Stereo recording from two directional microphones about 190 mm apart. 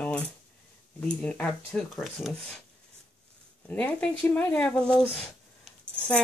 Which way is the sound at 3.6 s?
5° left (ahead or behind).